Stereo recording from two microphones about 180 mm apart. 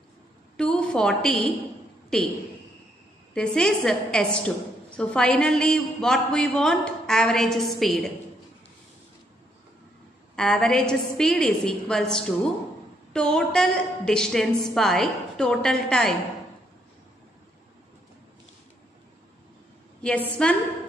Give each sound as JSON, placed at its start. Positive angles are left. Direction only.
{"t": 0.6, "sound": "a sound", "side_deg": 5}
{"t": 2.1, "sound": "a woman's voice", "side_deg": 5}
{"t": 3.3, "sound": "a woman's voice", "side_deg": 5}
{"t": 10.3, "sound": "a woman's voice", "side_deg": 5}
{"t": 20.0, "sound": "a woman's voice", "side_deg": 5}